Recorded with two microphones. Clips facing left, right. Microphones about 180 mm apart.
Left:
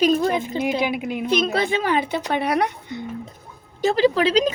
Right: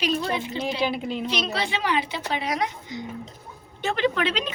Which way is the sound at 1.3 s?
50° left (ahead or behind).